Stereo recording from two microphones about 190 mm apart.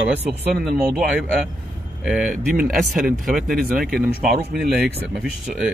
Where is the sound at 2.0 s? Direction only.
5° right (ahead or behind).